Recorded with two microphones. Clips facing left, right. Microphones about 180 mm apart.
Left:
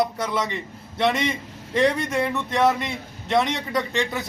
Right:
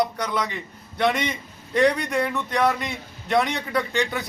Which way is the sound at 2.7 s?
25° left (ahead or behind).